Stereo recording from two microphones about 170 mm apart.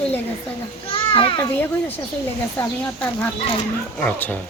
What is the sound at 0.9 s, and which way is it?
Speech, 30° left (ahead or behind).